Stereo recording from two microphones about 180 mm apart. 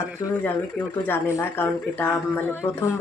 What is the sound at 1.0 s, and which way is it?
Speech, 10° left (ahead or behind).